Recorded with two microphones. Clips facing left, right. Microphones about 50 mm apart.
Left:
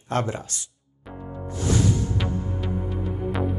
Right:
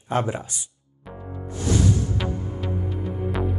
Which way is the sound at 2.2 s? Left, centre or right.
Centre.